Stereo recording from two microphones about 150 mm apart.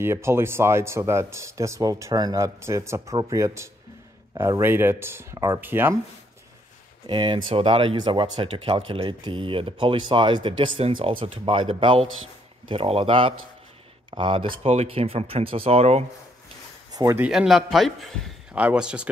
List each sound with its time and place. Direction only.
0.0 s speech: 15° right (ahead or behind)
7.1 s speech: 30° right (ahead or behind)
16.9 s speech: 20° right (ahead or behind)
17.2 s a man's voice: 5° right (ahead or behind)